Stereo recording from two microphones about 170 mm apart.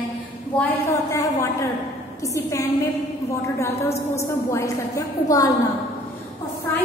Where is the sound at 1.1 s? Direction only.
15° left (ahead or behind).